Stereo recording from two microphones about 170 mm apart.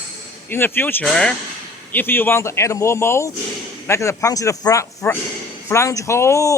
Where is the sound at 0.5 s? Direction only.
15° left (ahead or behind).